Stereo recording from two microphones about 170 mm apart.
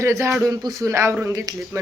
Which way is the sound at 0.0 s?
15° right (ahead or behind).